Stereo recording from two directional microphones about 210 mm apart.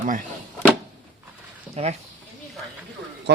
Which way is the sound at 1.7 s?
30° right (ahead or behind).